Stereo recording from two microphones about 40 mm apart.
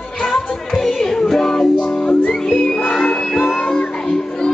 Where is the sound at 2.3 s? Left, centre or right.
Centre.